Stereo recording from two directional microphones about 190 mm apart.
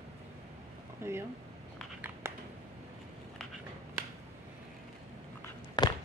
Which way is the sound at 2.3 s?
15° right (ahead or behind).